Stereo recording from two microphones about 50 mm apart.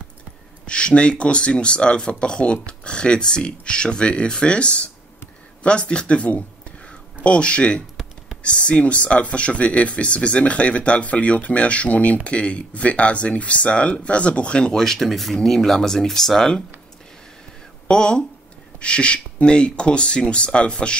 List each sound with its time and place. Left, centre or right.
0.7 s speech: left
17.8 s speech: centre